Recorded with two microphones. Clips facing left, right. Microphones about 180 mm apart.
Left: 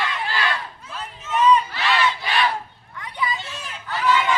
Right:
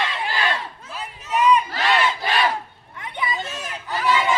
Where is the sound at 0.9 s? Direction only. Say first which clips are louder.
Even; 10° right (ahead or behind).